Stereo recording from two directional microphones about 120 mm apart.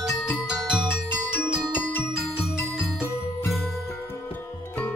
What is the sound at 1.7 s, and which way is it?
Music, 15° left (ahead or behind).